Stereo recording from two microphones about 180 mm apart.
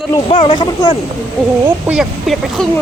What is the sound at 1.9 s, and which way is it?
Speech, centre (ahead or behind).